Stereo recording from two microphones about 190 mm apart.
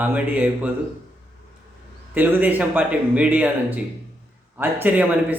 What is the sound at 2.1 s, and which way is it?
Speech, 10° right (ahead or behind).